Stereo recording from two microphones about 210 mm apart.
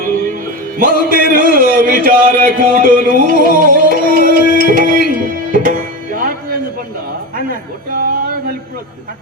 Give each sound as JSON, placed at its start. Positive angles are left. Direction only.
{"t": 0.8, "sound": "music", "side_deg": -45}
{"t": 1.5, "sound": "speech", "side_deg": -40}
{"t": 4.4, "sound": "music", "side_deg": -40}
{"t": 7.3, "sound": "a man's voice", "side_deg": -40}